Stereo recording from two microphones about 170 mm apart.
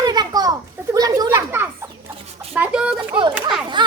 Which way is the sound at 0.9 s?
20° right (ahead or behind).